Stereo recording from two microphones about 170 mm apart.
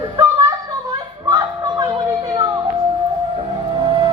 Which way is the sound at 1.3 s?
25° right (ahead or behind).